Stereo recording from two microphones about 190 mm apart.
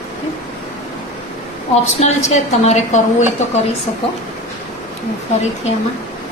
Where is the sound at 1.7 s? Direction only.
35° left (ahead or behind).